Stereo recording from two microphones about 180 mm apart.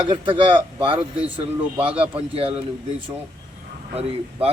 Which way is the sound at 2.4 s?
30° right (ahead or behind).